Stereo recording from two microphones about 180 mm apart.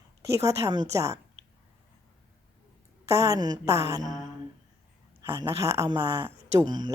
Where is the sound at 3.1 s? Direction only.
15° right (ahead or behind).